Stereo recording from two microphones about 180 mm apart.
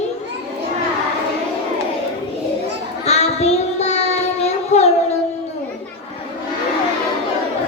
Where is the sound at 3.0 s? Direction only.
35° left (ahead or behind).